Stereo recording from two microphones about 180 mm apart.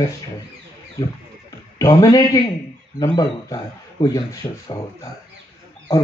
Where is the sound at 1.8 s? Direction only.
20° left (ahead or behind).